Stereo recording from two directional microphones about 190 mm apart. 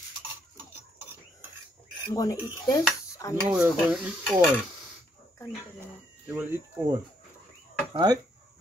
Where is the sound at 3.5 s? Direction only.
5° right (ahead or behind).